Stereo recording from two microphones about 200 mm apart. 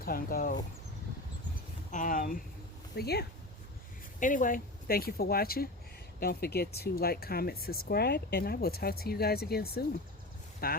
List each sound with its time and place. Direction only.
0.0 s speech: 45° left (ahead or behind)
1.9 s speech: 40° left (ahead or behind)
2.9 s speech: 55° left (ahead or behind)
4.2 s speech: 40° left (ahead or behind)